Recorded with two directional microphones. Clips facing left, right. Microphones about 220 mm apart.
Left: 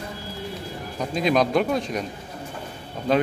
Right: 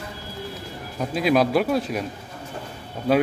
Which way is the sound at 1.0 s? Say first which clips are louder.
Right 1 dB; 5° right (ahead or behind).